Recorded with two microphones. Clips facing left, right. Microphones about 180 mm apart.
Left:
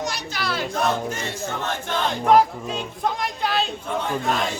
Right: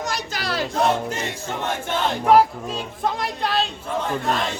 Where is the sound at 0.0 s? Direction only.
45° right (ahead or behind).